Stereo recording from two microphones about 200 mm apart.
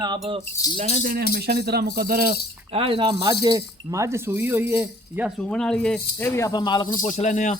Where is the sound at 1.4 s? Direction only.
50° right (ahead or behind).